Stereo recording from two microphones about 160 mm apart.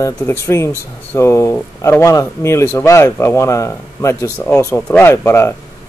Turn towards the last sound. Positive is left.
turn(degrees=15)  # may be behind; listen again after turning